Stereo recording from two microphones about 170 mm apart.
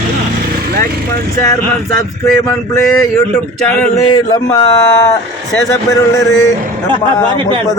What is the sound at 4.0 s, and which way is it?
Speech, 20° left (ahead or behind).